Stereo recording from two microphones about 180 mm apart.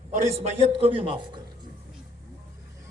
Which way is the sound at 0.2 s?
35° right (ahead or behind).